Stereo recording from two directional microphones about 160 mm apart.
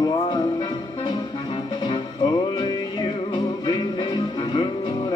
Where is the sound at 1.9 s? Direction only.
30° left (ahead or behind).